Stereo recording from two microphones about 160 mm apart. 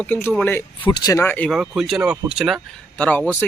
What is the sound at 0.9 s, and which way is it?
Speech, 25° left (ahead or behind).